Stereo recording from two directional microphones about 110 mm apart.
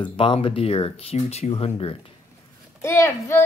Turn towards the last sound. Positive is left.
turn(degrees=25)  # may be behind; listen again after turning